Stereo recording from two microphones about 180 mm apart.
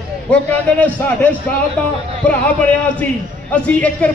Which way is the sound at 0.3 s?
10° left (ahead or behind).